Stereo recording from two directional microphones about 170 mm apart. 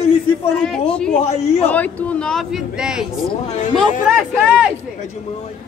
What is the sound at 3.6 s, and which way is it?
Speech, 45° left (ahead or behind).